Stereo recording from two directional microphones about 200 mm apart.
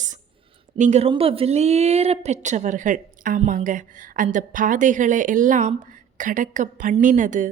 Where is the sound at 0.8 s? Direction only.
35° right (ahead or behind).